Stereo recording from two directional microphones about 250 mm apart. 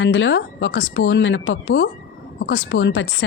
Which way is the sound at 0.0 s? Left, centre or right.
Left.